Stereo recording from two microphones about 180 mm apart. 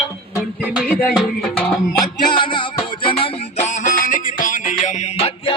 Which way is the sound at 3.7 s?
45° left (ahead or behind).